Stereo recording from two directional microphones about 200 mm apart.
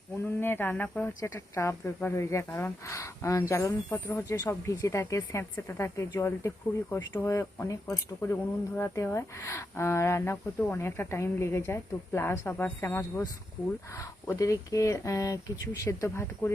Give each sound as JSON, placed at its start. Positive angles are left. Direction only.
{"t": 0.3, "sound": "speech", "side_deg": 10}